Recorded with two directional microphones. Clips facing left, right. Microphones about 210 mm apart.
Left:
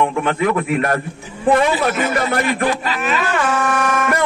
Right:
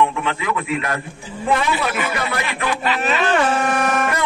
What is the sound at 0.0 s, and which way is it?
A man's voice, 50° left (ahead or behind).